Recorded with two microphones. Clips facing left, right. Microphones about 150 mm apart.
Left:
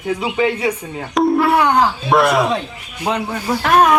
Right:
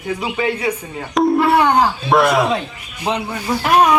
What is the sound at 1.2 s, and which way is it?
Music, centre (ahead or behind).